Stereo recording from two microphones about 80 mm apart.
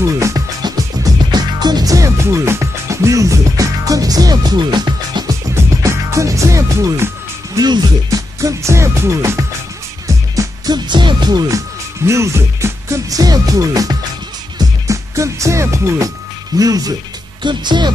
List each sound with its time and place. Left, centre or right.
0.0 s music: right
0.6 s music: right
5.8 s music: right
7.5 s music: right
8.4 s music: right
10.7 s music: right
12.1 s music: right
13.1 s music: right
16.5 s music: right
17.4 s music: right